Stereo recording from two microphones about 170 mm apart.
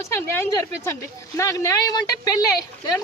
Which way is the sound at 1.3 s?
20° left (ahead or behind).